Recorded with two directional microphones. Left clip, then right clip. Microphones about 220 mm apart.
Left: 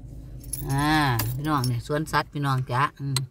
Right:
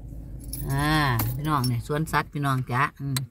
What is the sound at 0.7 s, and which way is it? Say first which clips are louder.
Speech: left 1 dB; 10° left (ahead or behind).